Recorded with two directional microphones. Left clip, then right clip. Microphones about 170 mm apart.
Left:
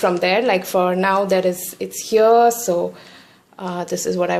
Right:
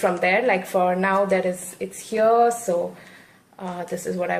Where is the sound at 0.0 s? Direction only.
60° left (ahead or behind).